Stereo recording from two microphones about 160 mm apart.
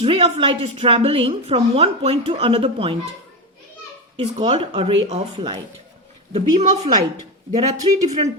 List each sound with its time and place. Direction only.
0.0 s a woman's voice: 35° right (ahead or behind)
4.2 s a woman's voice: 35° right (ahead or behind)
7.7 s speech: 25° right (ahead or behind)